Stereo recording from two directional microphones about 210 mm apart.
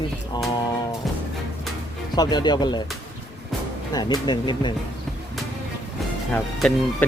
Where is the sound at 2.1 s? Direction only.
20° left (ahead or behind).